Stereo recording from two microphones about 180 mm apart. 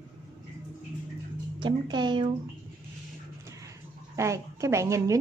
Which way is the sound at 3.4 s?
15° right (ahead or behind).